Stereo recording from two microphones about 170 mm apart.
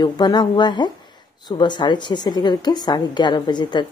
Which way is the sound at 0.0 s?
25° left (ahead or behind).